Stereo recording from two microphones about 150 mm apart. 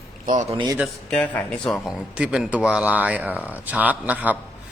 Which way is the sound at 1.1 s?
10° left (ahead or behind).